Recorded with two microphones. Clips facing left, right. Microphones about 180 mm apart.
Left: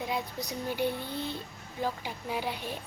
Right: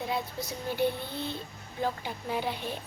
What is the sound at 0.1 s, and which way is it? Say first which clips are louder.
A woman's voice: right 1 dB; 15° left (ahead or behind).